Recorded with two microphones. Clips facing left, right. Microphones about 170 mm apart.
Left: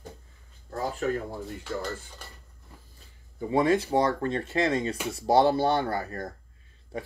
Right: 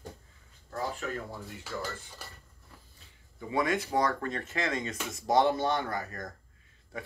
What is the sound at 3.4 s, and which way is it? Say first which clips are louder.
Speech: left 6 dB; 30° left (ahead or behind).